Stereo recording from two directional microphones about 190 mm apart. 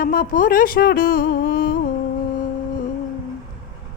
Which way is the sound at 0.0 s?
50° left (ahead or behind).